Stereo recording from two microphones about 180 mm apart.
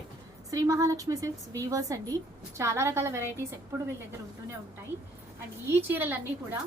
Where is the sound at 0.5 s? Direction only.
20° right (ahead or behind).